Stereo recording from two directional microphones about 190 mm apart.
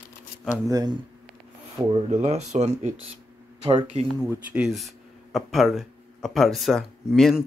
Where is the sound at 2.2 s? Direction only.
35° right (ahead or behind).